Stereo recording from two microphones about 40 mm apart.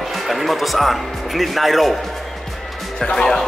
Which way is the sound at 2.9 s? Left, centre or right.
Centre.